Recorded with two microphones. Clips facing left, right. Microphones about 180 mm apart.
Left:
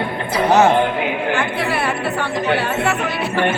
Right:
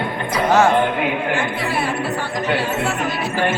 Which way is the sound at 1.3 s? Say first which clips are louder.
Left 1 dB; 65° left (ahead or behind).